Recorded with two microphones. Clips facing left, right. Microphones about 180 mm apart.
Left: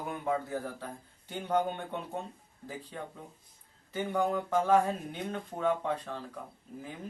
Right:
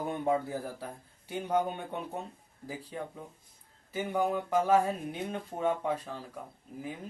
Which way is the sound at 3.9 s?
10° right (ahead or behind).